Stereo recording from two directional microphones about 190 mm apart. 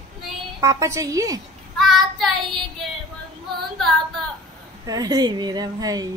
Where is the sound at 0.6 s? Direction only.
15° right (ahead or behind).